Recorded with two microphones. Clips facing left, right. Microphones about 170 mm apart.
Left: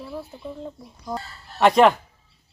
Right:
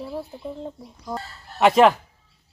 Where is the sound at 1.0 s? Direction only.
Centre (ahead or behind).